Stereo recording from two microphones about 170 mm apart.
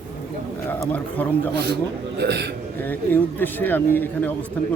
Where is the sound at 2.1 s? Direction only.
75° right (ahead or behind).